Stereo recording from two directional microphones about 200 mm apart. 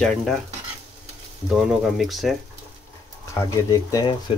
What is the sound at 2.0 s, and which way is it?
Speech, centre (ahead or behind).